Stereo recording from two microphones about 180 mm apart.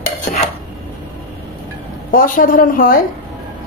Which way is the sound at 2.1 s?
50° left (ahead or behind).